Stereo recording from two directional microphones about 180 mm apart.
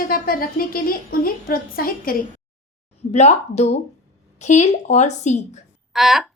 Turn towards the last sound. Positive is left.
turn(degrees=0)  # may be behind; listen again after turning